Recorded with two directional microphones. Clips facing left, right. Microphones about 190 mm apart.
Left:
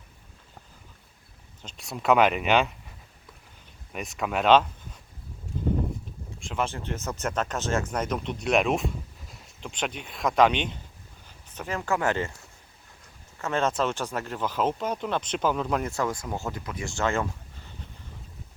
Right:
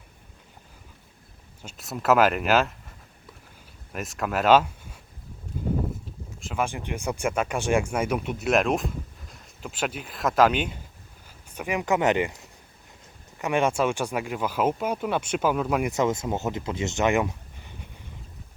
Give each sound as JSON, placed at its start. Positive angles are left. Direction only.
{"t": 1.6, "sound": "speech", "side_deg": 0}
{"t": 3.9, "sound": "speech", "side_deg": 0}
{"t": 6.4, "sound": "speech", "side_deg": -10}
{"t": 15.9, "sound": "speech", "side_deg": -20}